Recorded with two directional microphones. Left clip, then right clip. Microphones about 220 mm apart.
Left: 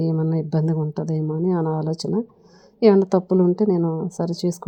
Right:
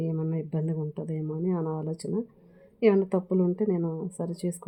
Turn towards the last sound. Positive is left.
turn(degrees=30)  # may be behind; listen again after turning